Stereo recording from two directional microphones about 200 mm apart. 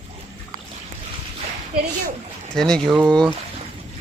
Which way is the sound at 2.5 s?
5° left (ahead or behind).